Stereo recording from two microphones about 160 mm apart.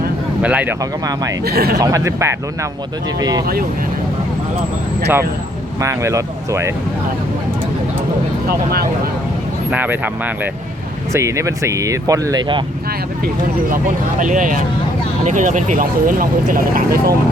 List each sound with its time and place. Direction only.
0.4 s speech: 10° right (ahead or behind)
1.5 s speech: 75° right (ahead or behind)
1.8 s speech: 20° right (ahead or behind)
5.8 s speech: 20° right (ahead or behind)
8.4 s speech: 70° right (ahead or behind)
9.7 s speech: 10° right (ahead or behind); by 12.6 s 30° right (ahead or behind)
13.2 s speech: 55° right (ahead or behind)